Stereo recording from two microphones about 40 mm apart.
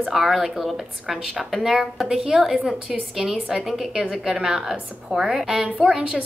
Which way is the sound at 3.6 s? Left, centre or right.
Centre.